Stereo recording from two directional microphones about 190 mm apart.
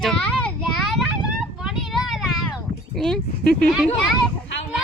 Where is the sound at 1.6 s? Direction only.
Centre (ahead or behind).